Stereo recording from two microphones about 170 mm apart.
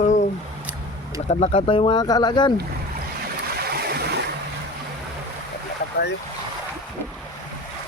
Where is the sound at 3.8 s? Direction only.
70° right (ahead or behind).